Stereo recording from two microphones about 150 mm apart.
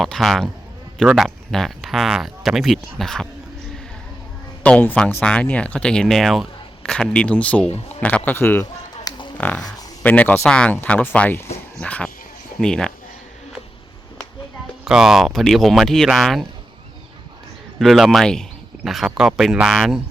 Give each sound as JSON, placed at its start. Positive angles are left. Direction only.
{"t": 0.0, "sound": "speech", "side_deg": 0}
{"t": 4.6, "sound": "speech", "side_deg": 10}
{"t": 9.0, "sound": "a sound", "side_deg": 30}
{"t": 9.4, "sound": "speech", "side_deg": 5}
{"t": 14.8, "sound": "speech", "side_deg": -5}
{"t": 17.7, "sound": "speech", "side_deg": 0}